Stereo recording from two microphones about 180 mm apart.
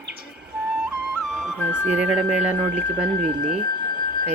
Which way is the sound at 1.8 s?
5° right (ahead or behind).